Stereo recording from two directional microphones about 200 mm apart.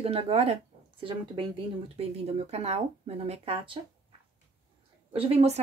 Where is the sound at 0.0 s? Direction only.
30° right (ahead or behind).